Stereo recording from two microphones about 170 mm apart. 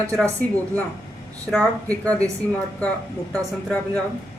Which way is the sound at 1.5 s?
5° left (ahead or behind).